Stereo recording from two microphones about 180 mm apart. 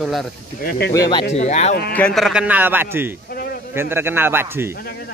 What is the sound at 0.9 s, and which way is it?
Speech, 20° left (ahead or behind).